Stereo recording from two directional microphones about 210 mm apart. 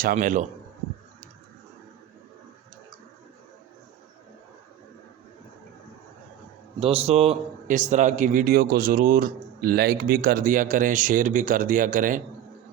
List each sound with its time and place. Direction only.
0.0 s a man's voice: 40° right (ahead or behind)
6.7 s a man's voice: 30° right (ahead or behind)